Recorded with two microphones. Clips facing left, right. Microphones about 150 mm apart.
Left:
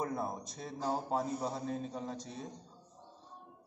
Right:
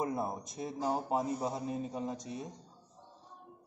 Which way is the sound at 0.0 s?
15° right (ahead or behind).